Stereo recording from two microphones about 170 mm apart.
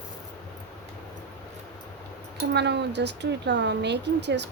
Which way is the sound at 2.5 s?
90° right.